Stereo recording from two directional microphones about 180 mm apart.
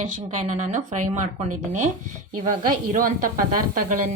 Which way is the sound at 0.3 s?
45° right (ahead or behind).